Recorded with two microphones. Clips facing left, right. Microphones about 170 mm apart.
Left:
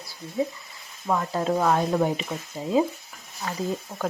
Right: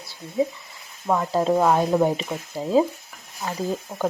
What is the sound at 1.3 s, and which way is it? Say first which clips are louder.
Speech: right 7 dB; 30° right (ahead or behind).